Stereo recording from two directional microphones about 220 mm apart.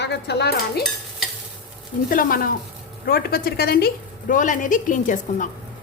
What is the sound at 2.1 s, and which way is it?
A woman's voice, 40° left (ahead or behind).